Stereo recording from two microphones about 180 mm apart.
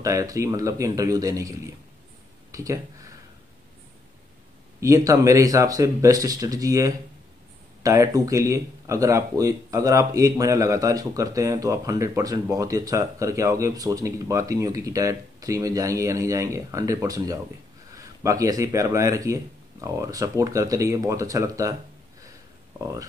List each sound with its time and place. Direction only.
0.0 s speech: 20° right (ahead or behind)
2.5 s speech: 20° right (ahead or behind)
4.7 s speech: 15° right (ahead or behind)
22.8 s speech: 15° right (ahead or behind)